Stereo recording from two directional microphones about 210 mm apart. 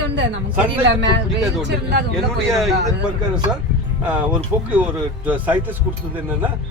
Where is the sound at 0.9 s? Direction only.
55° right (ahead or behind).